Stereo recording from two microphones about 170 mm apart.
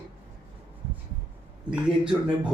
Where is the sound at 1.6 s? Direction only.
5° right (ahead or behind).